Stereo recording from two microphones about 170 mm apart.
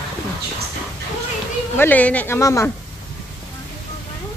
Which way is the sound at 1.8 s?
10° left (ahead or behind).